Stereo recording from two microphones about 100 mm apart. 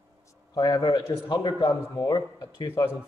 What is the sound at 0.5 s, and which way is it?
A man's voice, 45° left (ahead or behind).